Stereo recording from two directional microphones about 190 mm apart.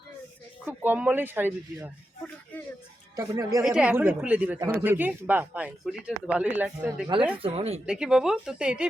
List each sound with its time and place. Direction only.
0.6 s speech: 10° right (ahead or behind)
3.2 s speech: 15° right (ahead or behind)
3.6 s speech: 5° right (ahead or behind)
7.3 s speech: 30° right (ahead or behind)
7.9 s a woman's voice: 5° right (ahead or behind)